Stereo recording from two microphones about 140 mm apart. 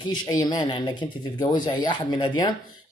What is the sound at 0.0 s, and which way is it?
A man's voice, 30° left (ahead or behind).